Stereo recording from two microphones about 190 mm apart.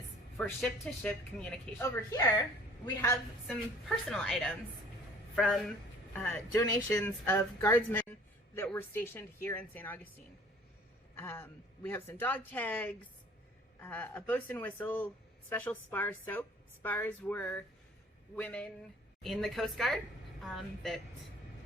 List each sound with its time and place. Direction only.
0.4 s a woman's voice: 5° left (ahead or behind)
2.8 s speech: 15° left (ahead or behind)
3.4 s a woman's voice: centre (ahead or behind)
11.2 s a woman's voice: 10° left (ahead or behind)